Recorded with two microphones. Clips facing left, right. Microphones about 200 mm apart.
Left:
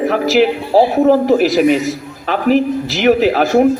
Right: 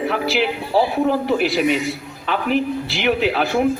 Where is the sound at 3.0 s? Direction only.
45° left (ahead or behind).